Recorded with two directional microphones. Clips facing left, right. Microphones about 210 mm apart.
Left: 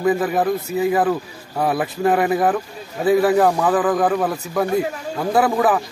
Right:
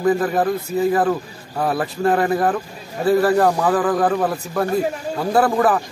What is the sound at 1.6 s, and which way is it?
Speech, 5° left (ahead or behind).